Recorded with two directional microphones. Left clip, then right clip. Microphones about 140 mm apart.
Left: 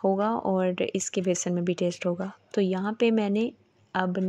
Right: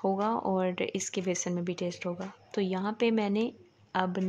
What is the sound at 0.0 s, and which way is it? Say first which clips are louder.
Speech: left 4 dB; 30° left (ahead or behind).